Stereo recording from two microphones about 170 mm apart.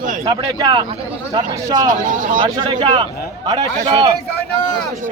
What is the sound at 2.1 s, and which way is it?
Speech, 50° right (ahead or behind).